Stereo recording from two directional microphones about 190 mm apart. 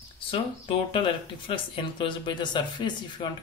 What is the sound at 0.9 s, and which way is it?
Speech, 25° left (ahead or behind).